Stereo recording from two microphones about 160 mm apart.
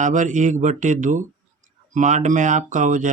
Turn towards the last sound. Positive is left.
turn(degrees=-55)  # may be behind; listen again after turning